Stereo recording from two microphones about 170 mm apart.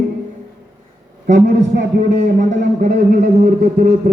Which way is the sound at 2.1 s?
45° right (ahead or behind).